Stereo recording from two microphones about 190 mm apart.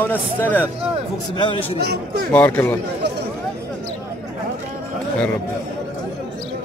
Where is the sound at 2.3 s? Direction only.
10° left (ahead or behind).